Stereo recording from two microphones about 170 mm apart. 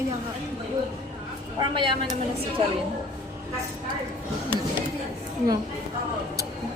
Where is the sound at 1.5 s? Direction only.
25° right (ahead or behind).